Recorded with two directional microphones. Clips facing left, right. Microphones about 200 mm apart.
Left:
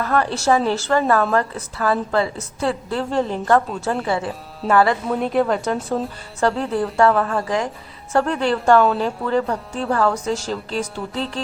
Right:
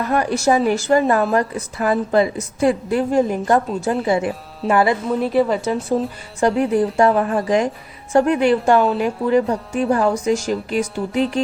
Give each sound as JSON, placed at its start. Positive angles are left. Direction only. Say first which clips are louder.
{"t": 0.0, "sound": "a woman's voice", "louder": "right 2 dB", "side_deg": -15}
{"t": 5.2, "sound": "speech", "louder": "right 1 dB", "side_deg": 0}
{"t": 6.4, "sound": "a woman's voice", "louder": "right 4 dB", "side_deg": -15}